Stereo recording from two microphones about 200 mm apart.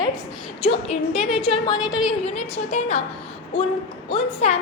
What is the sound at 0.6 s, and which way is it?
A woman's voice, 30° left (ahead or behind).